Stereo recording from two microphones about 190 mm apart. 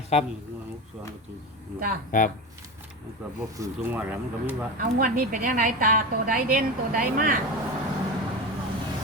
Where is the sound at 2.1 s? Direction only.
45° left (ahead or behind).